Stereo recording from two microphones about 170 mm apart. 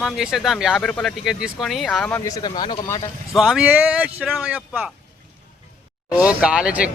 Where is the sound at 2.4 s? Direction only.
25° left (ahead or behind).